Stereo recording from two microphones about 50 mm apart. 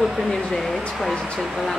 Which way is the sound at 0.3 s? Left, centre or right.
Centre.